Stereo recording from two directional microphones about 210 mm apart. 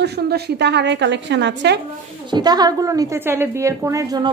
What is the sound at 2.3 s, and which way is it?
A woman's voice, 20° right (ahead or behind).